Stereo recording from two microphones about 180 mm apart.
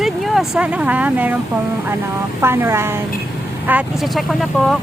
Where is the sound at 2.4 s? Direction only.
15° right (ahead or behind).